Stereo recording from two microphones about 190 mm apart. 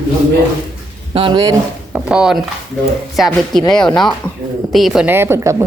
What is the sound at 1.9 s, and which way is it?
Speech, 5° right (ahead or behind).